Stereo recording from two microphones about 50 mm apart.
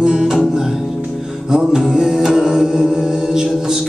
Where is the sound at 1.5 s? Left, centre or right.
Centre.